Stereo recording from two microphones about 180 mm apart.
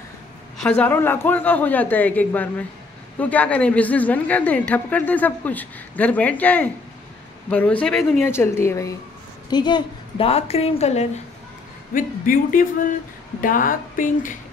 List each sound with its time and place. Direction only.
0.6 s a woman's voice: 5° left (ahead or behind)
8.2 s a woman's voice: 15° left (ahead or behind); by 11.1 s 35° left (ahead or behind)
11.9 s speech: 50° left (ahead or behind)